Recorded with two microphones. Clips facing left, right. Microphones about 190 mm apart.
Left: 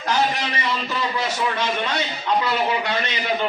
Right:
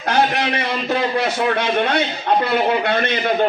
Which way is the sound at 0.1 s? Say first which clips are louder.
Right 4 dB; 60° right (ahead or behind).